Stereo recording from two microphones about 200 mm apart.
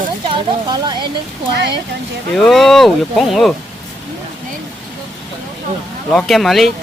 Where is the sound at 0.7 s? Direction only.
20° right (ahead or behind).